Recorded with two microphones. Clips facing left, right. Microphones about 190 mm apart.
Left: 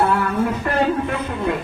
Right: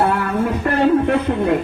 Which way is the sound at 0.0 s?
50° right (ahead or behind).